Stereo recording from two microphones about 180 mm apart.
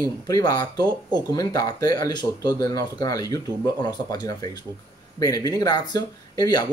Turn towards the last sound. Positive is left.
turn(degrees=20)  # may be behind; listen again after turning